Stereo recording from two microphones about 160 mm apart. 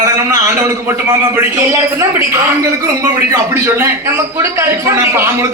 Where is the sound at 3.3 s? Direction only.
15° right (ahead or behind).